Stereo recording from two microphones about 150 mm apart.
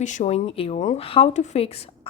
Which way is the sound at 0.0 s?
55° left (ahead or behind).